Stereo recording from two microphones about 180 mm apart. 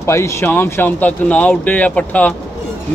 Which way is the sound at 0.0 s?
15° left (ahead or behind).